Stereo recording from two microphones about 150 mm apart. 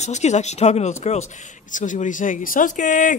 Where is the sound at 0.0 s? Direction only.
50° left (ahead or behind).